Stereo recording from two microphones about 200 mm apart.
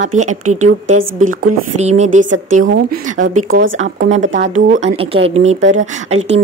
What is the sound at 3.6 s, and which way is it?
Speech, 75° right (ahead or behind).